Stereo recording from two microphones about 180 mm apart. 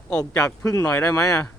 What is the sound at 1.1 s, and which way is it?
Speech, 20° left (ahead or behind).